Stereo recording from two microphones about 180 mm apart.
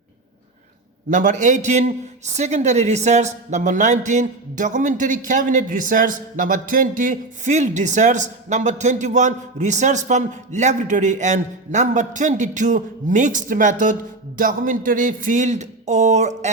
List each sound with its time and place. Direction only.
1.1 s a man's voice: 45° right (ahead or behind)